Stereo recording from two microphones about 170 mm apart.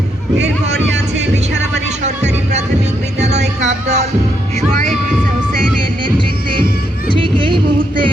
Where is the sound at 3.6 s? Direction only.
40° right (ahead or behind).